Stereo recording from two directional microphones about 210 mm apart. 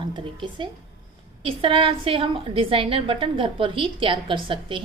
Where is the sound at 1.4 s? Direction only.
25° right (ahead or behind).